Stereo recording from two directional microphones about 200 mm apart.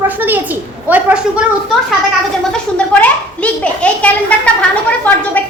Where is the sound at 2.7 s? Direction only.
5° left (ahead or behind).